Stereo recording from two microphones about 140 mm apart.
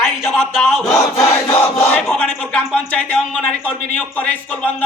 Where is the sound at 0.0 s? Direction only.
Centre (ahead or behind).